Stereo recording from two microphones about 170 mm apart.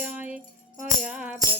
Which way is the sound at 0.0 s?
10° right (ahead or behind).